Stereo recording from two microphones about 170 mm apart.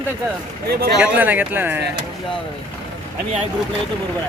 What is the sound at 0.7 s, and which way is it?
Speech, 65° right (ahead or behind).